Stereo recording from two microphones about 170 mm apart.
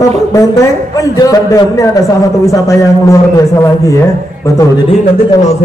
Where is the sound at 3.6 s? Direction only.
20° left (ahead or behind).